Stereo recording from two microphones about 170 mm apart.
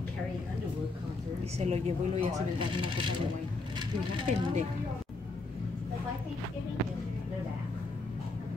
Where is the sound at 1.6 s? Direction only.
40° right (ahead or behind).